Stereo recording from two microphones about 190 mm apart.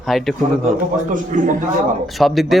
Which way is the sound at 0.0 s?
Centre (ahead or behind).